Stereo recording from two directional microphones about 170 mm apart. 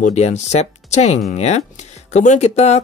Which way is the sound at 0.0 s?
40° left (ahead or behind).